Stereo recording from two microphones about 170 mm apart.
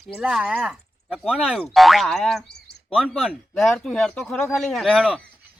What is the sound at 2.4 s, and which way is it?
Bird, 75° left (ahead or behind).